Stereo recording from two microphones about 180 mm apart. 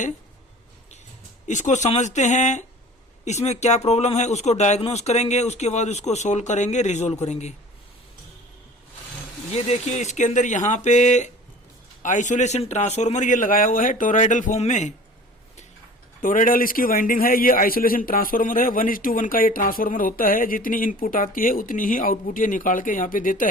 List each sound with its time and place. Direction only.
1.5 s speech: 40° left (ahead or behind)
9.5 s a man's voice: 40° left (ahead or behind)
16.2 s a man's voice: 50° left (ahead or behind)